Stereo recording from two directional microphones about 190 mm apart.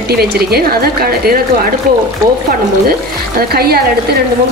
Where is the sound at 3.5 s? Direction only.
55° right (ahead or behind).